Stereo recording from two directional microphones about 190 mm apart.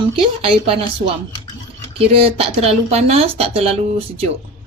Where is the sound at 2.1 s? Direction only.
30° right (ahead or behind).